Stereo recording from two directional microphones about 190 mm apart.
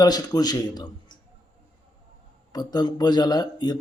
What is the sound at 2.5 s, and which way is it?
Speech, 20° left (ahead or behind).